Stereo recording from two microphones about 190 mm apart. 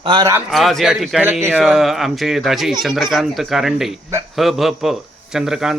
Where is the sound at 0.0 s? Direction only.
20° right (ahead or behind).